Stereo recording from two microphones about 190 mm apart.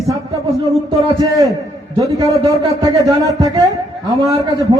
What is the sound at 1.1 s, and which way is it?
Speech, 20° right (ahead or behind).